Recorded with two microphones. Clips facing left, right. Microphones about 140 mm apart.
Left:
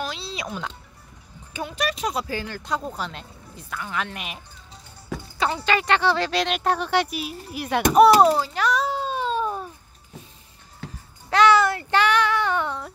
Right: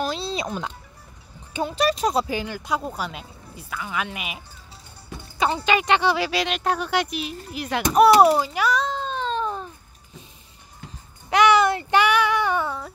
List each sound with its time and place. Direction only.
0.0 s music: 35° right (ahead or behind)
1.5 s speech: 30° right (ahead or behind)
2.2 s speech: 15° right (ahead or behind)
5.4 s speech: 20° right (ahead or behind)
8.7 s baby cry: 10° left (ahead or behind)
11.2 s child singing: 15° right (ahead or behind)